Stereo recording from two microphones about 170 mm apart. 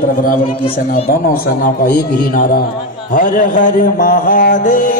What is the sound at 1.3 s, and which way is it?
A man's voice, 60° left (ahead or behind).